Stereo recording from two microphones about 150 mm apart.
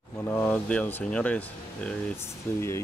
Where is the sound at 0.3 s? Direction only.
10° left (ahead or behind).